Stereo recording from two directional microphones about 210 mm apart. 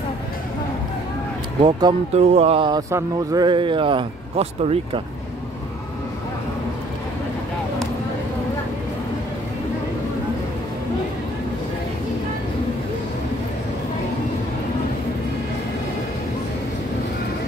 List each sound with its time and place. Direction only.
1.6 s speech: 20° right (ahead or behind)